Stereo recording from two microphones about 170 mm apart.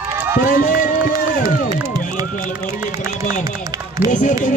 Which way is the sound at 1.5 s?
55° left (ahead or behind).